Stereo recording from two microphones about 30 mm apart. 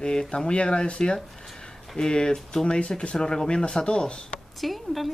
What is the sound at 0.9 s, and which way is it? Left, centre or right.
Speech, left.